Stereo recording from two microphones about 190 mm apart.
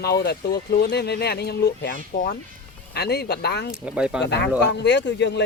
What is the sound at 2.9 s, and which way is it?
Speech, 60° left (ahead or behind).